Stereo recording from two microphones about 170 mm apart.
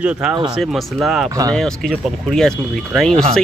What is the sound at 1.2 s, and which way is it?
Speech, 20° right (ahead or behind).